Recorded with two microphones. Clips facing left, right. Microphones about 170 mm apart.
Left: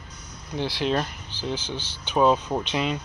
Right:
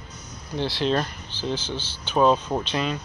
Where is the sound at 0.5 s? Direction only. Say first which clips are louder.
Right 1 dB; 15° left (ahead or behind).